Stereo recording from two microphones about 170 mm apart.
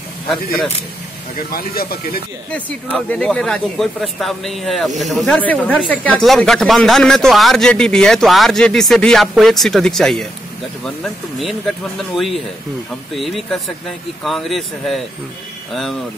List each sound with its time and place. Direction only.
1.5 s speech: 60° left (ahead or behind)
2.5 s speech: 10° left (ahead or behind)
12.0 s speech: centre (ahead or behind)